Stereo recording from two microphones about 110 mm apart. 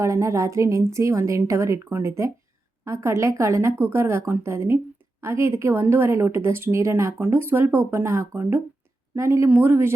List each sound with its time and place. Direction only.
0.0 s a woman's voice: 30° right (ahead or behind)